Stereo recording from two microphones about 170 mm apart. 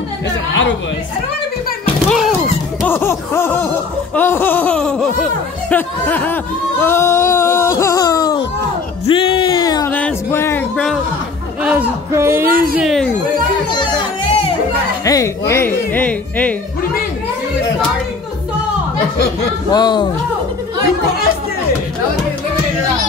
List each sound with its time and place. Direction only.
2.0 s a sound: centre (ahead or behind)
2.9 s laughter: 15° left (ahead or behind)
9.0 s music: 35° left (ahead or behind)
9.8 s music: 10° left (ahead or behind)
11.6 s a sound: 10° right (ahead or behind)
12.7 s a sound: centre (ahead or behind)
13.7 s music: 30° left (ahead or behind)
15.0 s speech: 20° left (ahead or behind)
19.7 s speech: 25° left (ahead or behind)